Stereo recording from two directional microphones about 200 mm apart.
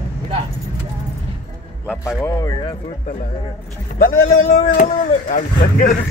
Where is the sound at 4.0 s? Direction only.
40° left (ahead or behind).